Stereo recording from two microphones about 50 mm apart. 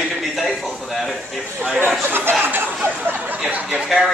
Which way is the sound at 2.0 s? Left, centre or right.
Right.